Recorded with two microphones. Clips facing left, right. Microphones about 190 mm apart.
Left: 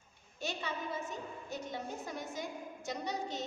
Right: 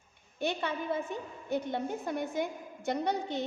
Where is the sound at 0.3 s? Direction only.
60° right (ahead or behind).